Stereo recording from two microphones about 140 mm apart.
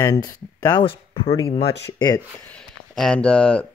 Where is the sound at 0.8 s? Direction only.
40° left (ahead or behind).